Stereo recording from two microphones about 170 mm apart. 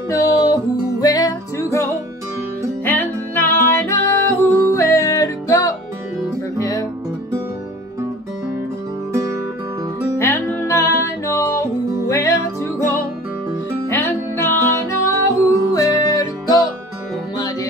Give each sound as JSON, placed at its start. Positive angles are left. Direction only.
{"t": 0.1, "sound": "music", "side_deg": 20}
{"t": 10.1, "sound": "music", "side_deg": 15}
{"t": 13.8, "sound": "music", "side_deg": 15}